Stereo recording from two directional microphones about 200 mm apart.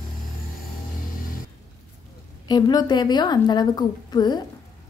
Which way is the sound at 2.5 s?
20° left (ahead or behind).